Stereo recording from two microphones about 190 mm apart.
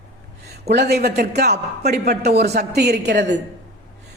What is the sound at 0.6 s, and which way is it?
A man's voice, 60° right (ahead or behind).